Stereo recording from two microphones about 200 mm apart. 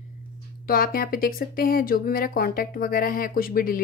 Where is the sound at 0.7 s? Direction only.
45° left (ahead or behind).